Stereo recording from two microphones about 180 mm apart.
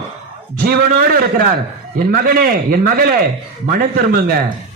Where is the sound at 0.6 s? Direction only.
55° right (ahead or behind).